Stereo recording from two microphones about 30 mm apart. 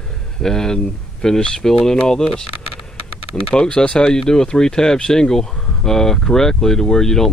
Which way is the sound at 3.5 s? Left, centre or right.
Left.